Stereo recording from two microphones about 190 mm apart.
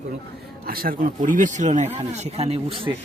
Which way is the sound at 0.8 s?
45° right (ahead or behind).